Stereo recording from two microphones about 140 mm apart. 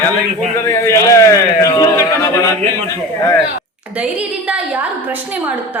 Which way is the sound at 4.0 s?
10° right (ahead or behind).